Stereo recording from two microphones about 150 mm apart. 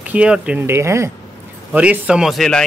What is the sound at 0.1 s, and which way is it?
Speech, 10° right (ahead or behind).